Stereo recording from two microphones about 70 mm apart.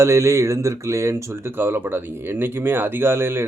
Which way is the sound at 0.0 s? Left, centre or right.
Right.